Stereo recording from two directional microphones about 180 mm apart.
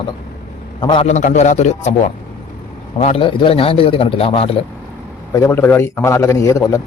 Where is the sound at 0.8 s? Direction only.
25° left (ahead or behind).